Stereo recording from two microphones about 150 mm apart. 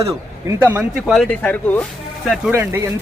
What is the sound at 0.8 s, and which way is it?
Speech, 5° right (ahead or behind).